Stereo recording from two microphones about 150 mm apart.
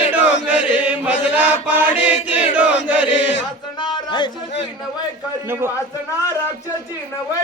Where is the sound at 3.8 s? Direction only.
30° left (ahead or behind).